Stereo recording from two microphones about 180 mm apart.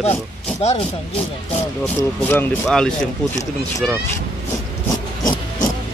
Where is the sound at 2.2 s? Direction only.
10° left (ahead or behind).